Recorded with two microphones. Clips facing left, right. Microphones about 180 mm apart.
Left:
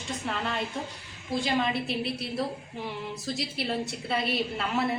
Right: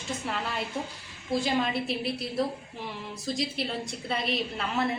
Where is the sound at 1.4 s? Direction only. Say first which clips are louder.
Left 2 dB; centre (ahead or behind).